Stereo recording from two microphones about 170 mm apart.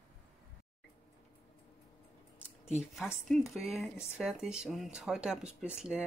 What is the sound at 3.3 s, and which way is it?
Speech, centre (ahead or behind).